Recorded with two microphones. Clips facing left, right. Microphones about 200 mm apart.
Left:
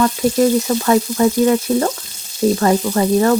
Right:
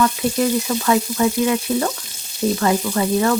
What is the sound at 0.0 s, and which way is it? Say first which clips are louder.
Frying: left 4 dB; 40° left (ahead or behind).